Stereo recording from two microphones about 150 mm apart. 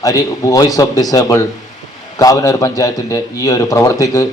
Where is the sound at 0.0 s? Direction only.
20° left (ahead or behind).